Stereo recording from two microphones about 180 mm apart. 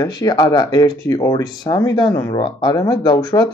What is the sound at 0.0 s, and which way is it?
Speech, 25° left (ahead or behind).